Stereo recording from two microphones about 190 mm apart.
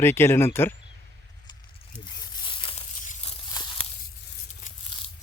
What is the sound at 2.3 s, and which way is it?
Tearing, 25° left (ahead or behind).